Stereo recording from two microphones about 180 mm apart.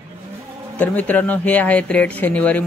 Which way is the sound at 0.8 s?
10° left (ahead or behind).